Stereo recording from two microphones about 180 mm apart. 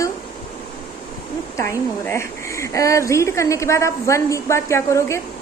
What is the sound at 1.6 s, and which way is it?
A woman's voice, 15° left (ahead or behind).